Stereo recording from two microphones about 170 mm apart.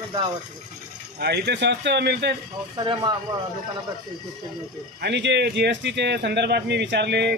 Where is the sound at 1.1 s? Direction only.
75° right (ahead or behind).